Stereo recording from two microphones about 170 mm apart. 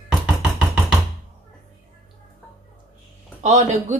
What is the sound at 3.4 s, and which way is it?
Speech, 45° right (ahead or behind).